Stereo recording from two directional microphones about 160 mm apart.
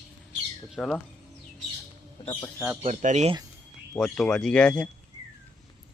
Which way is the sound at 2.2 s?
25° left (ahead or behind).